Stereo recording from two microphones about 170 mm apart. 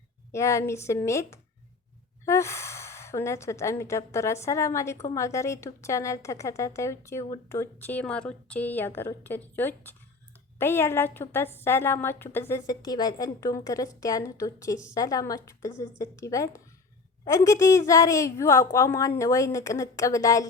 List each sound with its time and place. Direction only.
0.3 s a woman's voice: 15° left (ahead or behind)